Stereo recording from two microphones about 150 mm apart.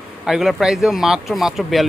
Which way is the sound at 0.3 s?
Centre (ahead or behind).